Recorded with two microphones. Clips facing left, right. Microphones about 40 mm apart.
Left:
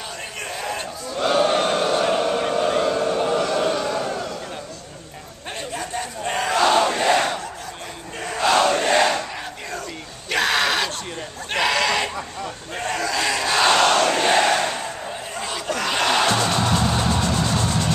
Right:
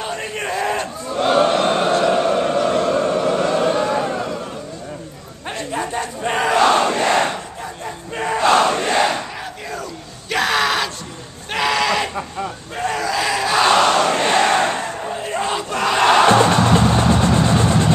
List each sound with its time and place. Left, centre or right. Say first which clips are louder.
0.0 s a sound: right 7 dB; right
2.1 s a sound: right 4 dB; centre
2.9 s a sound: right 3 dB; right
5.7 s battle cry: right 6 dB; centre
8.2 s crowd: right 4 dB; right
8.9 s crowd: right 1 dB; centre
10.3 s yell: right 2 dB; centre
11.5 s goat: right 2 dB; centre
12.7 s battle cry: right 3 dB; centre
14.3 s crowd: right 3 dB; right
15.2 s battle cry: right 5 dB; right
16.0 s music: right 8 dB; right